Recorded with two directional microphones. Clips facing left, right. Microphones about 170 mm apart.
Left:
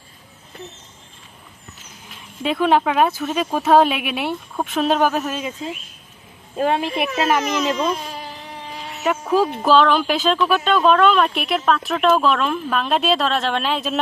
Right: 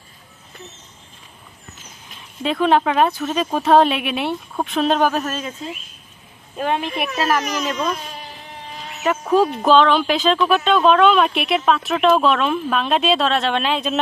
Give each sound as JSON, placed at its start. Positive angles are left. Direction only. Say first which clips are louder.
{"t": 2.4, "sound": "speech", "louder": "even", "side_deg": 5}
{"t": 6.5, "sound": "speech", "louder": "left 2 dB", "side_deg": 30}
{"t": 9.7, "sound": "a woman's voice", "louder": "even", "side_deg": 5}